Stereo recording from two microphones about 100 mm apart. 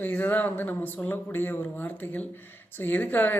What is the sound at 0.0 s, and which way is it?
Speech, 20° left (ahead or behind).